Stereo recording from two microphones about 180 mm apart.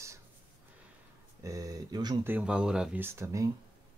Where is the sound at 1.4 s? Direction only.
20° right (ahead or behind).